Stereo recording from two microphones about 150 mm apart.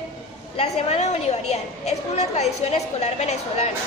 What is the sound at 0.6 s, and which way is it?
A woman's voice, 45° left (ahead or behind).